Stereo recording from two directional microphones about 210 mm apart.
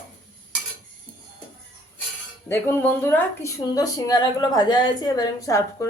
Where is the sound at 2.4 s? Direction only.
10° left (ahead or behind).